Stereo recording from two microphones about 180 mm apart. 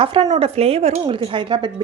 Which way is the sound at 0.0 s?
35° right (ahead or behind).